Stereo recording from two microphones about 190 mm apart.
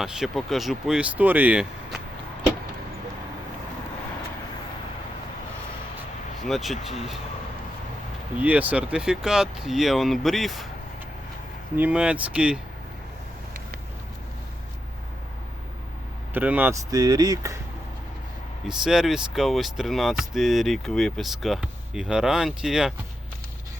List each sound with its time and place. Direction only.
0.0 s speech: centre (ahead or behind)
6.4 s speech: centre (ahead or behind)
8.4 s speech: 10° right (ahead or behind)
11.8 s speech: 5° right (ahead or behind)
16.3 s speech: 10° right (ahead or behind)
16.9 s speech: 20° right (ahead or behind)
18.7 s speech: 5° right (ahead or behind)